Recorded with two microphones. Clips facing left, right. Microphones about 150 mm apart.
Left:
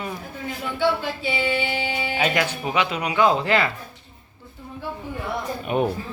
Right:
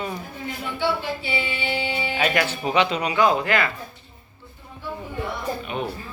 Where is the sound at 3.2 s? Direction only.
25° left (ahead or behind).